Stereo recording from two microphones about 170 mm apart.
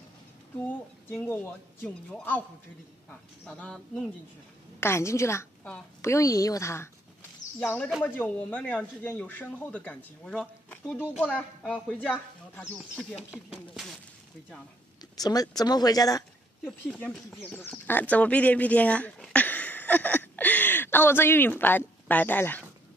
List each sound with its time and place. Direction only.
0.7 s speech: 10° left (ahead or behind)
4.7 s speech: 15° left (ahead or behind); by 13.9 s centre (ahead or behind)
15.1 s speech: 20° left (ahead or behind)
16.6 s speech: 5° left (ahead or behind)